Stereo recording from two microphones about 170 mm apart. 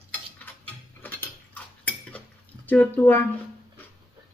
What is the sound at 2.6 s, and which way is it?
Speech, 10° left (ahead or behind).